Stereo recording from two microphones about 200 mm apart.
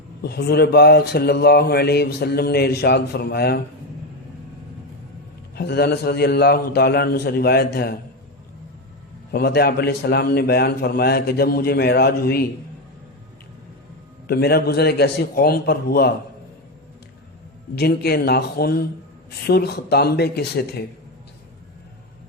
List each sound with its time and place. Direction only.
0.2 s speech: 50° left (ahead or behind)
5.5 s speech: 55° left (ahead or behind)
9.3 s speech: 50° left (ahead or behind)
14.3 s speech: 50° left (ahead or behind)
17.7 s speech: 50° left (ahead or behind)